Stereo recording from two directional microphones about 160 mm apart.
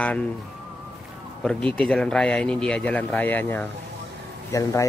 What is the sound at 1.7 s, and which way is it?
Speech, 5° left (ahead or behind).